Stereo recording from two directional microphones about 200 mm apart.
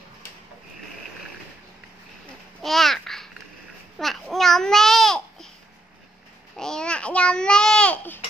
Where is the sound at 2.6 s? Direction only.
Centre (ahead or behind).